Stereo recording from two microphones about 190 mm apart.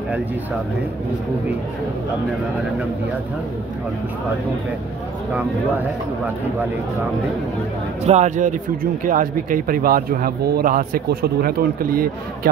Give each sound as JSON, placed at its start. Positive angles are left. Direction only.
{"t": 8.1, "sound": "speech", "side_deg": -40}